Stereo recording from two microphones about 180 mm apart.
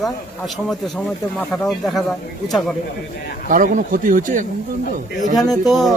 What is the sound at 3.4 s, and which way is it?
A man's voice, 45° right (ahead or behind).